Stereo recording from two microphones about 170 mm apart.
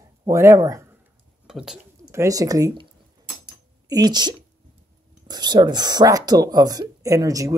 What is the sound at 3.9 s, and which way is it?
Speech, 25° right (ahead or behind).